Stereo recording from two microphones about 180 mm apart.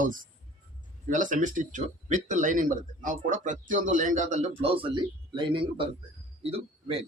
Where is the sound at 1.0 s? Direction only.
45° right (ahead or behind).